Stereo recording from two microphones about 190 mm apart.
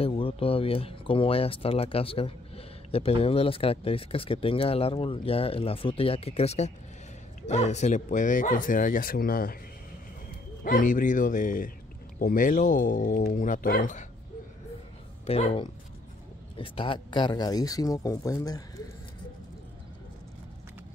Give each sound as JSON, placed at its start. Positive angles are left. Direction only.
{"t": 0.0, "sound": "speech", "side_deg": 30}
{"t": 10.6, "sound": "speech", "side_deg": 45}
{"t": 15.2, "sound": "speech", "side_deg": 30}